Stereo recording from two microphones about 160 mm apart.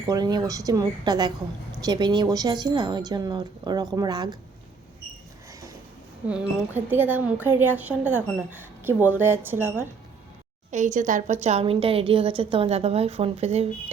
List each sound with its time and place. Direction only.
0.1 s a woman's voice: 25° right (ahead or behind)
5.5 s train: 20° right (ahead or behind)
6.2 s a woman's voice: 5° right (ahead or behind)
10.7 s a woman's voice: 50° right (ahead or behind)